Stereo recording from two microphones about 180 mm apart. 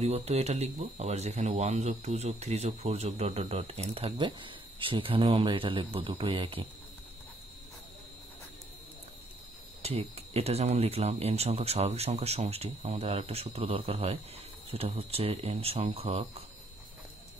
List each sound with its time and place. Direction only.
0.0 s speech: 35° right (ahead or behind)
9.8 s speech: 35° right (ahead or behind)